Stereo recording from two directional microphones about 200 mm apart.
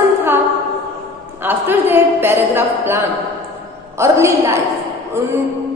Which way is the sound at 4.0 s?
15° right (ahead or behind).